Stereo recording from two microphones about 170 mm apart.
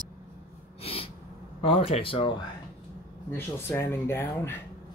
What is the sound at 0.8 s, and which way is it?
Owl, 35° left (ahead or behind).